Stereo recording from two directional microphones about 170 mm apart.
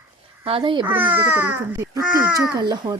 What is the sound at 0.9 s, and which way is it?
A child's voice, 10° right (ahead or behind).